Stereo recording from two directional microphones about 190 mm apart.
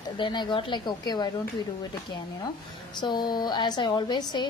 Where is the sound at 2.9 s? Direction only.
20° left (ahead or behind).